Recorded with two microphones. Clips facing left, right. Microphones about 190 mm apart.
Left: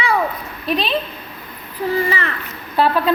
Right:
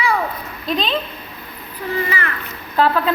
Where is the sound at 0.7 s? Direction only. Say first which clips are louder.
Left 1 dB; 10° left (ahead or behind).